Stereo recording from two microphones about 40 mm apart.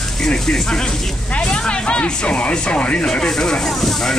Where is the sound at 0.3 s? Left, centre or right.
Left.